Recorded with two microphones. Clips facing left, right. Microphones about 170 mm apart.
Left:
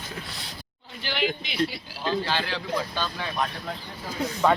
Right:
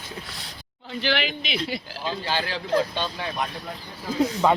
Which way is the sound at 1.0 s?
85° right.